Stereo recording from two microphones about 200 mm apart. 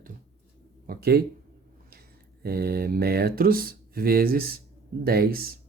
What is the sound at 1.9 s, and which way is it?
Speech, 50° right (ahead or behind).